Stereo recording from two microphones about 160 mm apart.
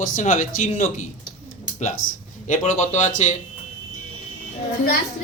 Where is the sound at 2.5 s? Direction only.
45° left (ahead or behind).